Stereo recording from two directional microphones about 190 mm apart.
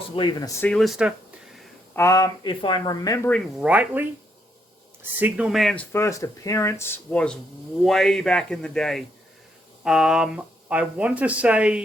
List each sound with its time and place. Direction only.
0.2 s speech: 20° left (ahead or behind)
0.7 s a sound: centre (ahead or behind)
2.0 s speech: 15° left (ahead or behind)
3.2 s speech: 5° left (ahead or behind)
3.7 s speech: 5° right (ahead or behind)
5.2 s speech: 5° right (ahead or behind)
5.9 s speech: 15° left (ahead or behind); by 11.8 s 5° right (ahead or behind)